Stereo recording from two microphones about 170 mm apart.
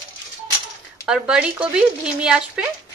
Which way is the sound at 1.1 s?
5° right (ahead or behind).